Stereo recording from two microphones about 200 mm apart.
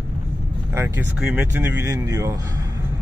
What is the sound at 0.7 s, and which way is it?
Speech, 10° right (ahead or behind).